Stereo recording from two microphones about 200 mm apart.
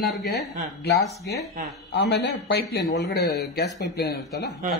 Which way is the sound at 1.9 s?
60° left (ahead or behind).